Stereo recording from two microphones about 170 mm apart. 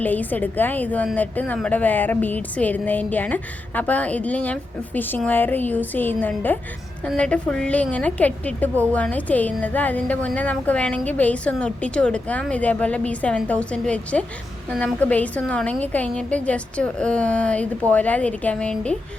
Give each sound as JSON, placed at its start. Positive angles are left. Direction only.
{"t": 0.0, "sound": "a woman's voice", "side_deg": 10}